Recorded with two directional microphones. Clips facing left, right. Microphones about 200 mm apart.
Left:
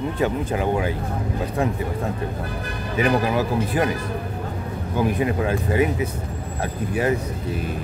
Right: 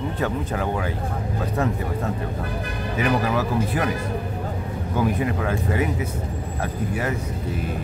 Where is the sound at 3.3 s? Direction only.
15° left (ahead or behind).